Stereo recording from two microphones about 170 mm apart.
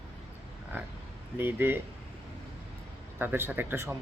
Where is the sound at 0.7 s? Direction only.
10° right (ahead or behind).